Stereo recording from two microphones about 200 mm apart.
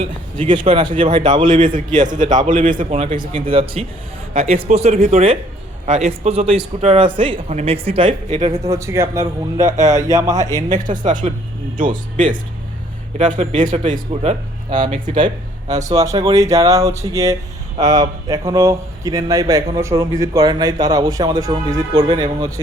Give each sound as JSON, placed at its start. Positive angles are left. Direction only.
{"t": 0.0, "sound": "a man's voice", "side_deg": -25}
{"t": 1.5, "sound": "a man's voice", "side_deg": -40}
{"t": 8.6, "sound": "a man's voice", "side_deg": -15}
{"t": 10.9, "sound": "a man's voice", "side_deg": -35}